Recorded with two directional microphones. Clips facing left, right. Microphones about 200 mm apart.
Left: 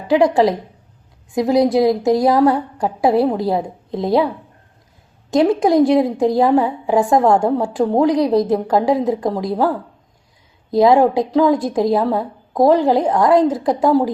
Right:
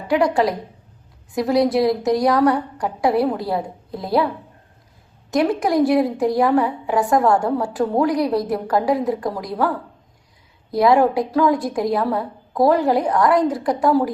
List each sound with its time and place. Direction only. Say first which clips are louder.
0.1 s a woman's voice: left 4 dB; 20° left (ahead or behind)
5.3 s a woman's voice: left 5 dB; 25° left (ahead or behind)